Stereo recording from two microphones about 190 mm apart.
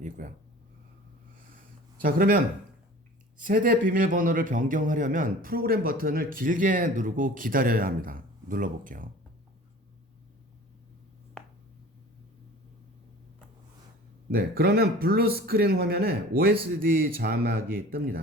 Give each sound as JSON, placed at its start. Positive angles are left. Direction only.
{"t": 0.0, "sound": "speech", "side_deg": -40}
{"t": 2.0, "sound": "a man's voice", "side_deg": -50}
{"t": 3.4, "sound": "a man's voice", "side_deg": -45}
{"t": 14.3, "sound": "a man's voice", "side_deg": -55}